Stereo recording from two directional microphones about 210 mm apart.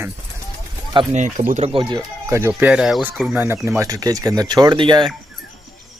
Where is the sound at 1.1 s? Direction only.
35° right (ahead or behind).